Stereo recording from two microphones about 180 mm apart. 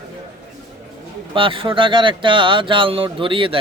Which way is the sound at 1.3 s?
30° right (ahead or behind).